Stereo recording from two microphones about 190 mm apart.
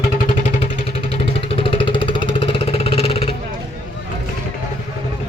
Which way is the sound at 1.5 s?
25° left (ahead or behind).